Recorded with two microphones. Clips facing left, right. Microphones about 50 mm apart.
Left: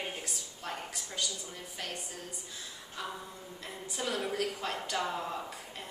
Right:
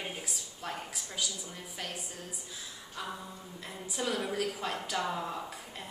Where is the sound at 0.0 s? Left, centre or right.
Centre.